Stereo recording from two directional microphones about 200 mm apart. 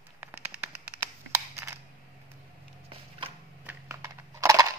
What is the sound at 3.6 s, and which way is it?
Typing, 15° right (ahead or behind).